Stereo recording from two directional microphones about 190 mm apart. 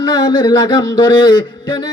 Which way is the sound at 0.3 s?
25° left (ahead or behind).